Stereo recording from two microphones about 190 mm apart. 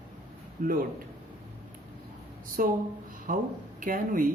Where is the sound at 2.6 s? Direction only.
45° right (ahead or behind).